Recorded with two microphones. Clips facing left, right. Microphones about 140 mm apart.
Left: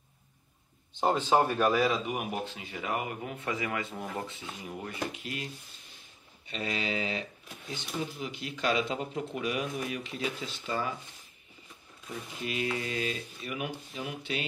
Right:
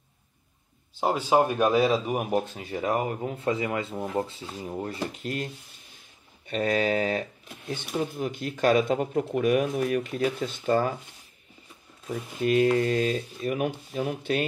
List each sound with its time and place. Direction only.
1.0 s speech: 10° right (ahead or behind)
2.0 s speech: 40° right (ahead or behind)
5.2 s speech: 45° right (ahead or behind)
12.4 s speech: 45° right (ahead or behind)